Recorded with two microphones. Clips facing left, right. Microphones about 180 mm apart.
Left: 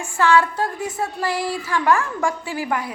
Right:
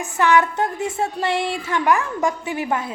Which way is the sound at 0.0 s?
20° right (ahead or behind).